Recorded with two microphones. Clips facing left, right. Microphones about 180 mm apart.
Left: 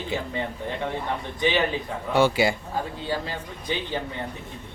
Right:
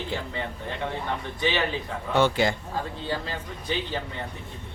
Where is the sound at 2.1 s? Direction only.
10° left (ahead or behind).